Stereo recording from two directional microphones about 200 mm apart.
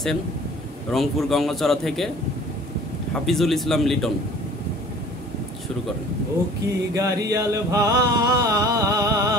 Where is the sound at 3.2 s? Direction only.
Centre (ahead or behind).